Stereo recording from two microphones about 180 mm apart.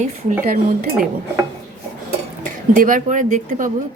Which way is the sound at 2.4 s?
50° right (ahead or behind).